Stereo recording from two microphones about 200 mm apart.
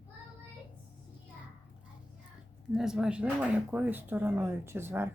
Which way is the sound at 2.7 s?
Centre (ahead or behind).